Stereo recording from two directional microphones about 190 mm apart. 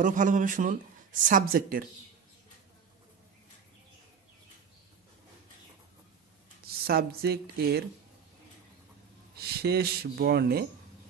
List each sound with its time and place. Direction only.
0.0 s speech: 40° right (ahead or behind)
6.6 s speech: 55° right (ahead or behind)
9.4 s speech: 55° right (ahead or behind)